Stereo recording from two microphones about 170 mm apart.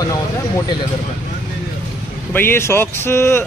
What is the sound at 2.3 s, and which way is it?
Speech, 10° left (ahead or behind).